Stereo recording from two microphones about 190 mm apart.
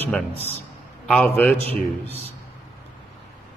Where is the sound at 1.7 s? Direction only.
30° right (ahead or behind).